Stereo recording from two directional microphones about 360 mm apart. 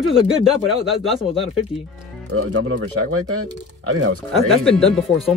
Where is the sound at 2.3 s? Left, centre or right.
Right.